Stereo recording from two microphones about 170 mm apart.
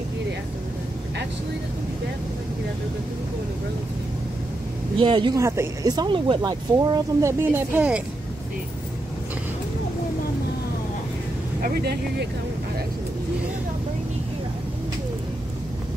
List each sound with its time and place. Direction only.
4.9 s speech: 30° right (ahead or behind); by 8.0 s 10° right (ahead or behind)
11.6 s speech: 65° right (ahead or behind)